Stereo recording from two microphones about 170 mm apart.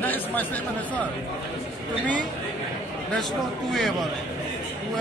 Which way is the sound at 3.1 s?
Centre (ahead or behind).